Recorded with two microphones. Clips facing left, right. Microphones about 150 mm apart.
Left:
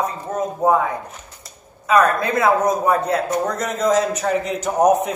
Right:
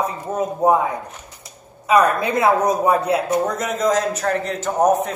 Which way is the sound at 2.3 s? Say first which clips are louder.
Even; 30° right (ahead or behind).